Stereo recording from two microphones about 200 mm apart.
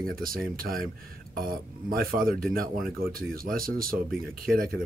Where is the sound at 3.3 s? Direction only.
45° right (ahead or behind).